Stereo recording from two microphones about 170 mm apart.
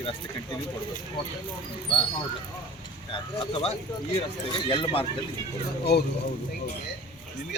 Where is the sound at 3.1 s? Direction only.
35° left (ahead or behind).